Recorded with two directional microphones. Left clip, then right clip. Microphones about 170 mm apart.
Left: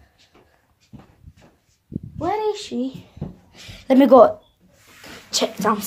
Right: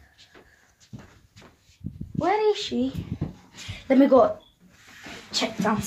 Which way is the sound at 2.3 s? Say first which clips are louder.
Right 1 dB; 20° left (ahead or behind).